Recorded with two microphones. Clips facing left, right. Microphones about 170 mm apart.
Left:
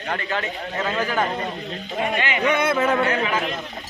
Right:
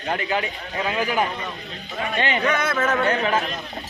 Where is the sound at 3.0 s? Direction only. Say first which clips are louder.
Right 1 dB; 35° right (ahead or behind).